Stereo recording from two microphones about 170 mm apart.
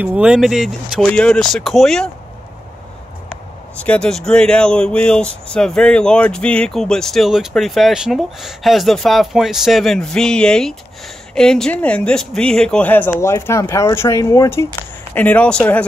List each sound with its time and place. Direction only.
0.0 s speech: 5° right (ahead or behind)
3.8 s speech: 5° left (ahead or behind)